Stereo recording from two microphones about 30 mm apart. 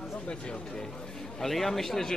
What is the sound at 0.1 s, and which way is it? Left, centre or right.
Speech, left.